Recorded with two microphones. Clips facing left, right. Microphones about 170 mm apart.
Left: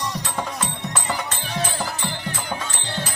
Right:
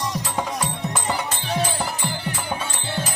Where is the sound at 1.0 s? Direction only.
15° right (ahead or behind).